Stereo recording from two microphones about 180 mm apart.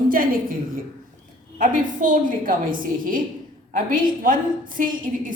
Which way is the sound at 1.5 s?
45° right (ahead or behind).